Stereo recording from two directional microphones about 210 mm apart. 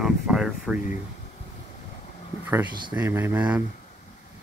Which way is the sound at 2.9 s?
20° right (ahead or behind).